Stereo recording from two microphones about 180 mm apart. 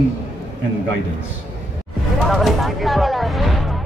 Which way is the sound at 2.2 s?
Centre (ahead or behind).